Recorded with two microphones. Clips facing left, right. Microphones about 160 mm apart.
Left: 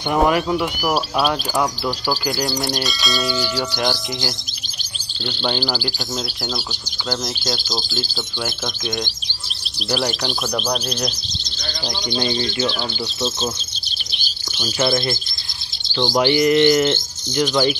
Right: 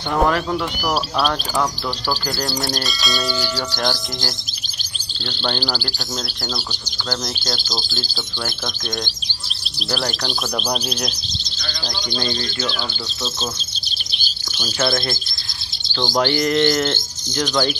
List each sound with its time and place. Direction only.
0.1 s speech: 10° left (ahead or behind)
2.8 s speech: centre (ahead or behind)
5.4 s speech: 10° left (ahead or behind)
7.1 s speech: centre (ahead or behind)
9.8 s speech: 10° left (ahead or behind)
10.6 s speech: 5° right (ahead or behind)
11.6 s speech: 20° left (ahead or behind)
14.6 s speech: 10° left (ahead or behind)